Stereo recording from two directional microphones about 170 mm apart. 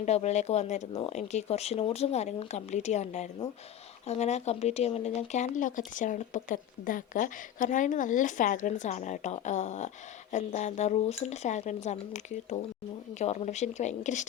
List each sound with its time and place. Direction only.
0.0 s speech: 40° left (ahead or behind)